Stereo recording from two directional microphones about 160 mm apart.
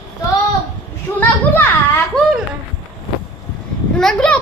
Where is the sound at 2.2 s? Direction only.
Centre (ahead or behind).